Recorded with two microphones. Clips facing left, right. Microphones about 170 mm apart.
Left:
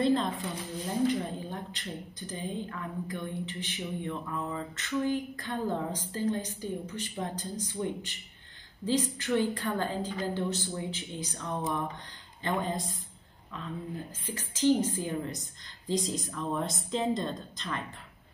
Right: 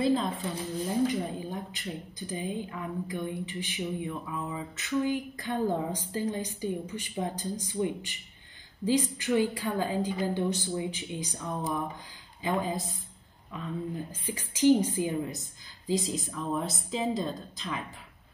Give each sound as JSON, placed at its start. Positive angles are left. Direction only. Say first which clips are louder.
{"t": 0.0, "sound": "a sound", "louder": "even", "side_deg": 0}
{"t": 1.0, "sound": "a woman's voice", "louder": "even", "side_deg": -10}
{"t": 15.9, "sound": "speech", "louder": "right 1 dB", "side_deg": 0}